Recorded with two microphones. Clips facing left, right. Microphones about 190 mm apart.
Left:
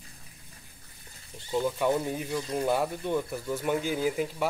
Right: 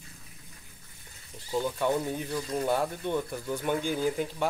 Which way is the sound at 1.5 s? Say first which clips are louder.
Left 1 dB; 5° left (ahead or behind).